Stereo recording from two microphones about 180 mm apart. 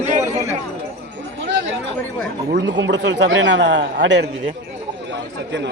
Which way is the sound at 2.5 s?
85° right.